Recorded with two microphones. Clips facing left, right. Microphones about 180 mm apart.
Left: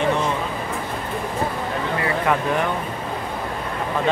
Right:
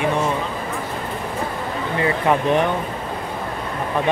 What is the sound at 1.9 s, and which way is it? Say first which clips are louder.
Speech: right 4 dB; 20° right (ahead or behind).